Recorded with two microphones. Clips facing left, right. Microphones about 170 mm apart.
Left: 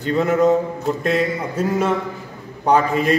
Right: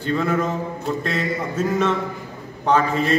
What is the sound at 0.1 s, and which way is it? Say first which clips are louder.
Speech: left 3 dB; 20° left (ahead or behind).